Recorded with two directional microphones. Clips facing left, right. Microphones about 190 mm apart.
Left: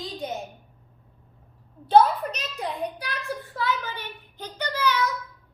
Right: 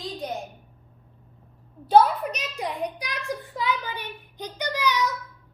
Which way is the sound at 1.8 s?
10° right (ahead or behind).